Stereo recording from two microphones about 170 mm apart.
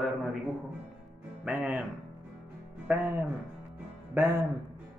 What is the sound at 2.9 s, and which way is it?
Speech, 10° right (ahead or behind).